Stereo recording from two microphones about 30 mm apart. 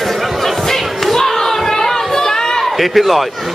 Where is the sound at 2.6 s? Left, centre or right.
Centre.